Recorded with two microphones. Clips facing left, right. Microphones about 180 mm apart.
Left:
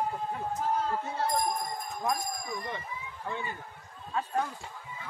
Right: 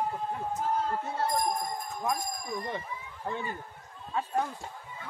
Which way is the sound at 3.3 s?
40° right (ahead or behind).